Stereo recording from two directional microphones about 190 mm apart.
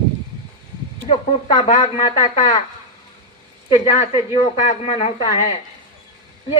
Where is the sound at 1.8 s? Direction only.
20° left (ahead or behind).